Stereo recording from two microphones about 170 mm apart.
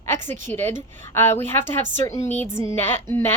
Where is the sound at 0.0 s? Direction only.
15° left (ahead or behind).